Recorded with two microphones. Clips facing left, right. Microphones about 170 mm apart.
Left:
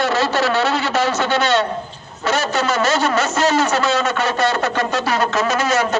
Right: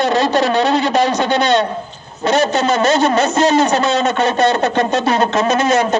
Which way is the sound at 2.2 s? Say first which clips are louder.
Right 5 dB; 20° right (ahead or behind).